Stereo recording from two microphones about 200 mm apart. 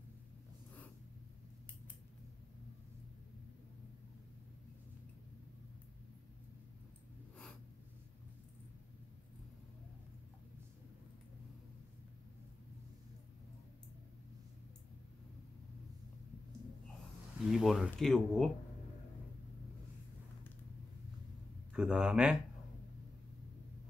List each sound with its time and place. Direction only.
17.5 s speech: centre (ahead or behind)
21.7 s speech: 5° right (ahead or behind)